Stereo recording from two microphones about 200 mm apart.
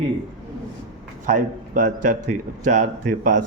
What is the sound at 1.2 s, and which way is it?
A man's voice, 40° right (ahead or behind).